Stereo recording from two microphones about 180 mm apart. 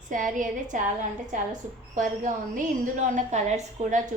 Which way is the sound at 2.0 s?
45° right (ahead or behind).